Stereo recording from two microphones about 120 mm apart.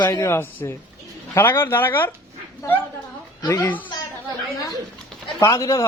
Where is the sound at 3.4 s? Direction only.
30° left (ahead or behind).